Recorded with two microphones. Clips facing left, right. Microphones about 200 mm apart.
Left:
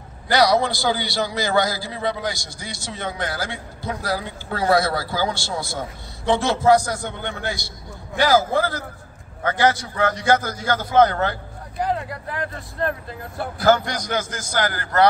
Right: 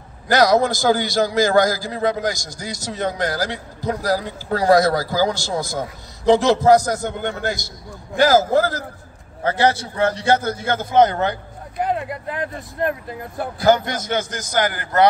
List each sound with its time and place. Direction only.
0.3 s a man's voice: 45° right (ahead or behind)
9.4 s a man's voice: 30° right (ahead or behind)